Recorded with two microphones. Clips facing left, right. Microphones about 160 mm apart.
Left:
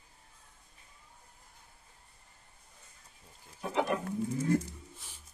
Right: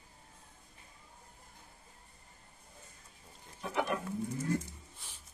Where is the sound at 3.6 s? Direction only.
30° left (ahead or behind).